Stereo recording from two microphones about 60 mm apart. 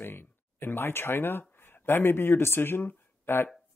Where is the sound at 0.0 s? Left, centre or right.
Left.